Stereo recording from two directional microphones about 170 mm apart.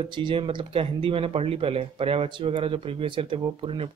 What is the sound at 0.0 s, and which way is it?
Speech, 30° right (ahead or behind).